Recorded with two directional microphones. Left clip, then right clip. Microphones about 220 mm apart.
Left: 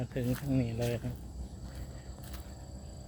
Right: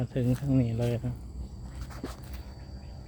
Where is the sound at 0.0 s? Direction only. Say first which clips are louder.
Right 4 dB; 30° right (ahead or behind).